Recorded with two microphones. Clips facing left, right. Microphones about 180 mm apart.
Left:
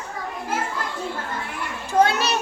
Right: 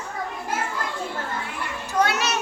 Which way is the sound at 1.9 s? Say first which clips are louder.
Left 4 dB; 30° left (ahead or behind).